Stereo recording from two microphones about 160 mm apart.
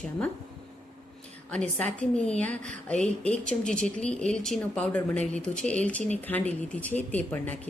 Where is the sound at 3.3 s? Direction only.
55° right (ahead or behind).